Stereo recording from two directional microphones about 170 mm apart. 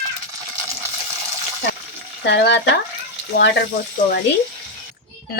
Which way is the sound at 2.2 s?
90° left.